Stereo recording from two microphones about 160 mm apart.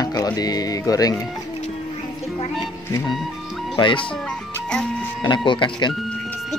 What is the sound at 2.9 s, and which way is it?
Speech, 20° left (ahead or behind).